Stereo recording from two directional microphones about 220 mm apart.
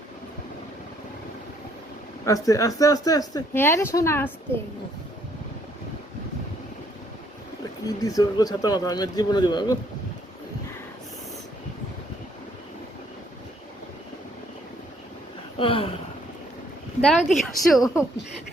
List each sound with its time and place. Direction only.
2.2 s speech: 15° left (ahead or behind)
8.0 s speech: 15° left (ahead or behind)
15.5 s a sound: 25° left (ahead or behind)
17.0 s a woman's voice: centre (ahead or behind)